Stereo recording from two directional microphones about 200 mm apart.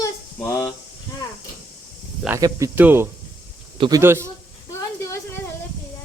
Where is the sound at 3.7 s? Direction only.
25° right (ahead or behind).